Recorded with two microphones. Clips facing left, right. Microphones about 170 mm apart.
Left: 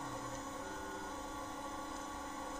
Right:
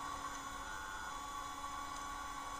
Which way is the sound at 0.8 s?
35° left (ahead or behind).